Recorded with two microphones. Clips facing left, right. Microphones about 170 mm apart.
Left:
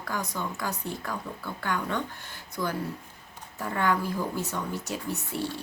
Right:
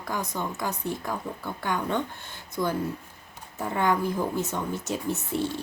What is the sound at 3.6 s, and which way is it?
Speech, 20° right (ahead or behind).